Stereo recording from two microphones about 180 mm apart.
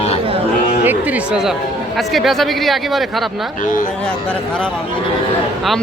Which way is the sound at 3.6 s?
45° left (ahead or behind).